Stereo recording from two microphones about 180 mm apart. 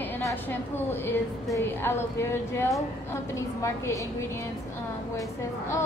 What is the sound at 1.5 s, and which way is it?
A woman's voice, 15° left (ahead or behind).